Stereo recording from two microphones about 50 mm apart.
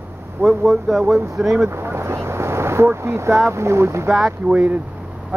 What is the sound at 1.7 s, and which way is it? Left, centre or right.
Speech, right.